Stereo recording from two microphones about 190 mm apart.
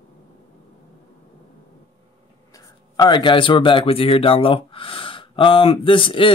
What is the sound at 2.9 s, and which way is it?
Speech, 25° left (ahead or behind).